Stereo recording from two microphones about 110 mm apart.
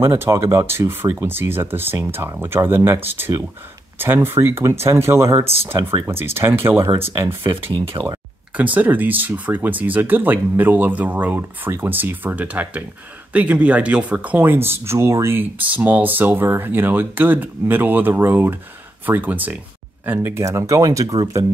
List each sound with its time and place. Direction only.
0.0 s speech: 25° right (ahead or behind)
7.1 s speech: 60° right (ahead or behind)
8.7 s speech: 15° right (ahead or behind); by 21.5 s 30° right (ahead or behind)